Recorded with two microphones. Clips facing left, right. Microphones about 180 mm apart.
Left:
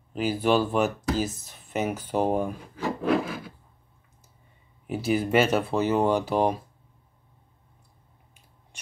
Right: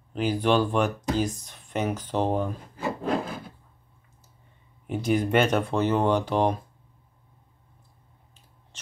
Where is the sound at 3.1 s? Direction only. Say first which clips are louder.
Left 5 dB; 90° left.